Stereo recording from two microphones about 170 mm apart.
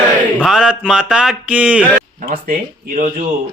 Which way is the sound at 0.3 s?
Centre (ahead or behind).